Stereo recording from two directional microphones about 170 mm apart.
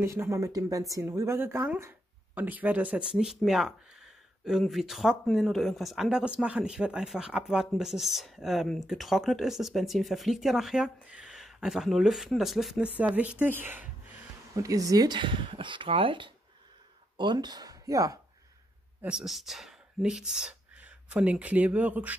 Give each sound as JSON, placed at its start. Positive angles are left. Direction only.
{"t": 0.0, "sound": "a woman's voice", "side_deg": -15}
{"t": 18.9, "sound": "speech", "side_deg": -5}